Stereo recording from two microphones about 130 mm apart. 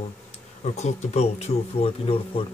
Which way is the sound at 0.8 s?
55° left (ahead or behind).